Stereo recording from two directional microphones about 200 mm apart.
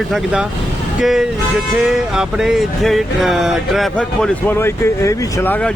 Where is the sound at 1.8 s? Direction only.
5° right (ahead or behind).